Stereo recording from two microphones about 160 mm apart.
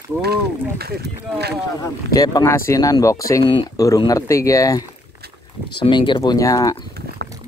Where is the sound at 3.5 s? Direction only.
30° left (ahead or behind).